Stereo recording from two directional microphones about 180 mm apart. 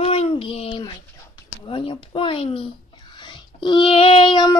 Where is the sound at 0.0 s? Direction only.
35° left (ahead or behind).